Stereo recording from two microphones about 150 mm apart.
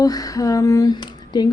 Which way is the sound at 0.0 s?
25° left (ahead or behind).